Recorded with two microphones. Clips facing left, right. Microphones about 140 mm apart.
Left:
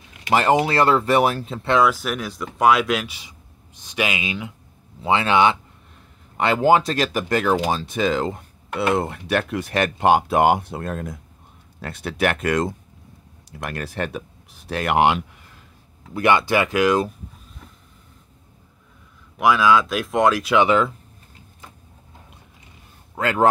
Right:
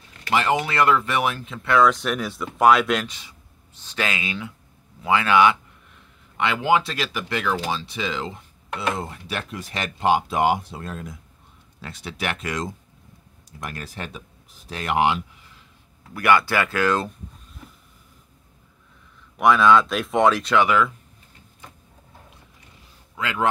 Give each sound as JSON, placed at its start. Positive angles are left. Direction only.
{"t": 0.3, "sound": "speech", "side_deg": 40}
{"t": 1.8, "sound": "speech", "side_deg": 5}
{"t": 6.3, "sound": "speech", "side_deg": 40}
{"t": 16.1, "sound": "speech", "side_deg": 20}
{"t": 19.3, "sound": "speech", "side_deg": 5}
{"t": 20.5, "sound": "speech", "side_deg": 25}
{"t": 23.1, "sound": "a man's voice", "side_deg": 45}